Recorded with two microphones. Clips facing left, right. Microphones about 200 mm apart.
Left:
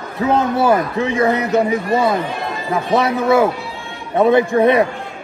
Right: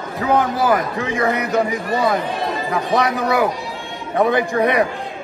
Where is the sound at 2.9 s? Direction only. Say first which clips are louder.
Left 4 dB; 25° left (ahead or behind).